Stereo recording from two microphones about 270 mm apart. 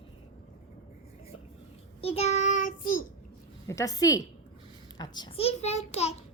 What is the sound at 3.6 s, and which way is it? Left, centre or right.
A child's voice, centre.